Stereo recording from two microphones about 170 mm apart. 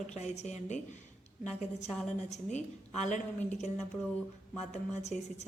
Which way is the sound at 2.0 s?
45° left (ahead or behind).